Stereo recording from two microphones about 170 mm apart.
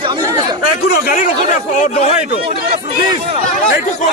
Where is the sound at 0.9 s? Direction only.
60° left (ahead or behind).